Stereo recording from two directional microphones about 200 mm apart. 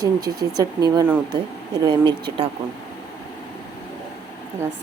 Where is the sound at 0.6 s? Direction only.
20° right (ahead or behind).